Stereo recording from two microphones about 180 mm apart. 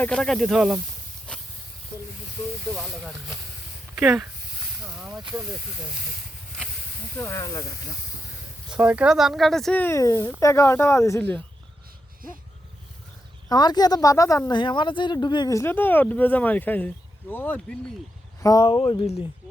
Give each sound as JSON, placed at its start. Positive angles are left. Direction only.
{"t": 0.0, "sound": "speech", "side_deg": 5}
{"t": 1.3, "sound": "a sound", "side_deg": 5}
{"t": 2.7, "sound": "speech", "side_deg": 0}
{"t": 4.9, "sound": "hiss", "side_deg": -5}
{"t": 7.2, "sound": "speech", "side_deg": 15}
{"t": 8.7, "sound": "speech", "side_deg": -5}
{"t": 13.5, "sound": "speech", "side_deg": 20}
{"t": 18.4, "sound": "speech", "side_deg": 25}